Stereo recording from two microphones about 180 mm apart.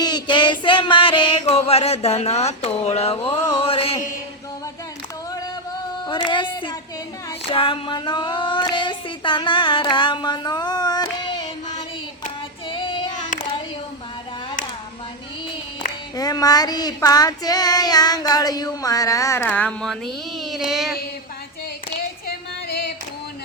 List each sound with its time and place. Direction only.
0.0 s music: 25° left (ahead or behind)
6.1 s a sound: 25° left (ahead or behind)
7.5 s child singing: 30° left (ahead or behind)
8.7 s music: 25° left (ahead or behind)
12.6 s child singing: 25° left (ahead or behind)
16.1 s child singing: 20° left (ahead or behind); by 20.6 s centre (ahead or behind)
20.7 s a sound: centre (ahead or behind)